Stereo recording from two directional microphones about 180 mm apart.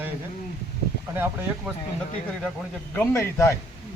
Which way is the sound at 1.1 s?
10° right (ahead or behind).